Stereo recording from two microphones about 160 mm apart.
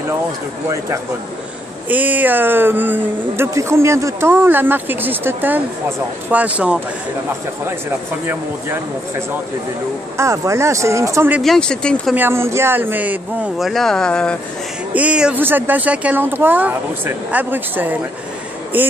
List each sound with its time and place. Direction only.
0.7 s speech: 20° right (ahead or behind)
10.1 s speech: 20° right (ahead or behind)
11.4 s speech: 5° left (ahead or behind)
12.2 s speech: 15° right (ahead or behind); by 14.4 s 5° left (ahead or behind)
15.0 s speech: 5° right (ahead or behind)